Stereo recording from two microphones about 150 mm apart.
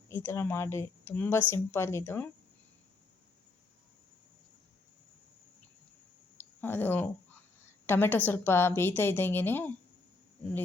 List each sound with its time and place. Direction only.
0.1 s a woman's voice: 15° left (ahead or behind)
6.3 s a sound: 15° left (ahead or behind)
7.6 s a woman's voice: 15° left (ahead or behind)